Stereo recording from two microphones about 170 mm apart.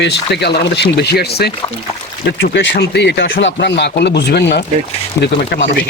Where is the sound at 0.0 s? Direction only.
85° left; by 1.5 s 70° left (ahead or behind).